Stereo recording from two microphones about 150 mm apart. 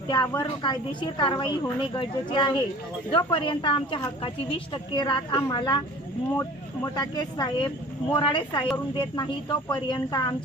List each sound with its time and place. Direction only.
0.1 s a woman's voice: 30° left (ahead or behind)